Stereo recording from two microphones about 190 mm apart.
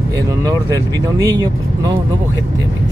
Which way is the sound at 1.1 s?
20° right (ahead or behind).